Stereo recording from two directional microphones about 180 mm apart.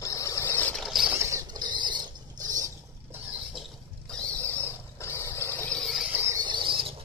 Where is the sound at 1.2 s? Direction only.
20° right (ahead or behind).